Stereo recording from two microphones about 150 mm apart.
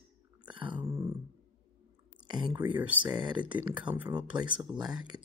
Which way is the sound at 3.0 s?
30° right (ahead or behind).